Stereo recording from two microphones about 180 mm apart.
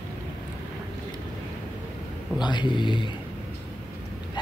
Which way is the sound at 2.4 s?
25° left (ahead or behind).